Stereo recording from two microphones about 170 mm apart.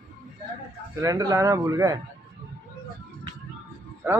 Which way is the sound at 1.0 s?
20° right (ahead or behind).